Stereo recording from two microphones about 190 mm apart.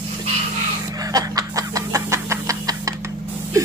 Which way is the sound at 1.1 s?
20° right (ahead or behind).